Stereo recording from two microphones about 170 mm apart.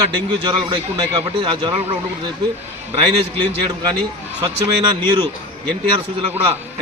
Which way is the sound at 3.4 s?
25° right (ahead or behind).